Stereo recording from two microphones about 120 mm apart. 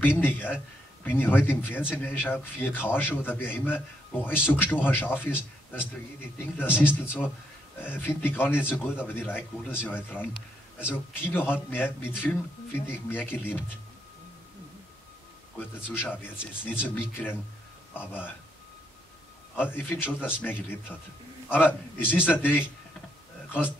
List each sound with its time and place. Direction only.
0.2 s a man's voice: 15° left (ahead or behind)
15.6 s a man's voice: 15° left (ahead or behind)
19.5 s a man's voice: 15° left (ahead or behind)